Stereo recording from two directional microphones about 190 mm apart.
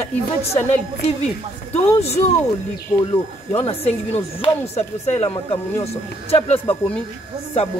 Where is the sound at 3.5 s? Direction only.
30° left (ahead or behind).